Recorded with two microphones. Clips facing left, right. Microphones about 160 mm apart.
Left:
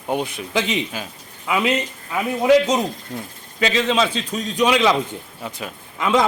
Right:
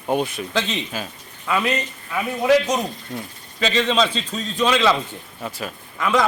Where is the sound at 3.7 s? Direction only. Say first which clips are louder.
Even; 10° left (ahead or behind).